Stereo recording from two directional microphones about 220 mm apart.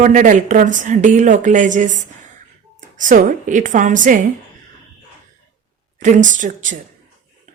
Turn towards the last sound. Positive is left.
turn(degrees=-35)  # may be behind; listen again after turning